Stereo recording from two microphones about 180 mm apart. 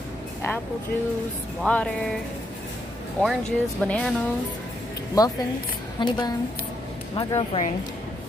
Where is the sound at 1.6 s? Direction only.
5° left (ahead or behind).